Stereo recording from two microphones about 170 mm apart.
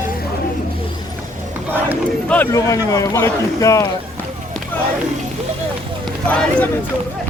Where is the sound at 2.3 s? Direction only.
15° left (ahead or behind).